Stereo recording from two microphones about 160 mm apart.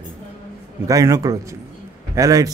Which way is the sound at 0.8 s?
20° right (ahead or behind).